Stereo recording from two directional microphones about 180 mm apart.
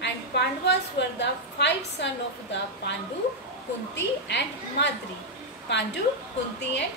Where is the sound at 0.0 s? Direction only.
70° left (ahead or behind).